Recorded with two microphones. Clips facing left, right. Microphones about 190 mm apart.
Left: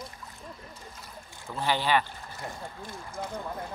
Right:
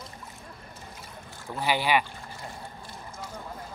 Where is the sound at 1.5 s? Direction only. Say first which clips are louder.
Right 1 dB; 10° right (ahead or behind).